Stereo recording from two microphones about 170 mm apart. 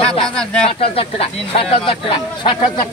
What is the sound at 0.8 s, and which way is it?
Speech, 35° left (ahead or behind).